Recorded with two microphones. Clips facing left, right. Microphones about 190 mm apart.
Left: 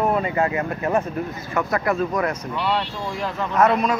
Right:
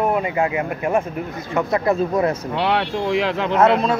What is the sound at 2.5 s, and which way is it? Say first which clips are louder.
Speech: right 3 dB; 75° right (ahead or behind).